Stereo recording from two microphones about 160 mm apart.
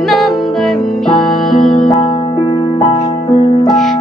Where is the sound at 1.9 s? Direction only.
30° left (ahead or behind).